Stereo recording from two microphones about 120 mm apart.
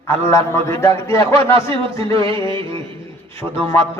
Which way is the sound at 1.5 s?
50° right (ahead or behind).